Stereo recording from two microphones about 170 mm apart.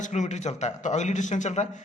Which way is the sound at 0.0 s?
45° left (ahead or behind).